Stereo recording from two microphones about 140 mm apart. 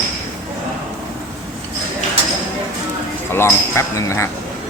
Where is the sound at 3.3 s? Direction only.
20° left (ahead or behind).